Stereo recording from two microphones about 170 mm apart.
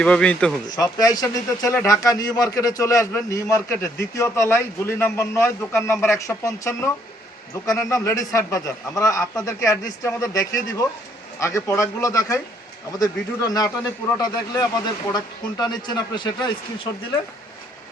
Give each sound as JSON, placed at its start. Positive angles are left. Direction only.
{"t": 0.0, "sound": "speech", "side_deg": 5}
{"t": 0.8, "sound": "a man's voice", "side_deg": 20}